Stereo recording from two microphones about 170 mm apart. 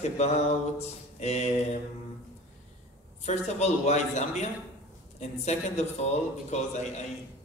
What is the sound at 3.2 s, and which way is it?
A man's voice, 40° left (ahead or behind).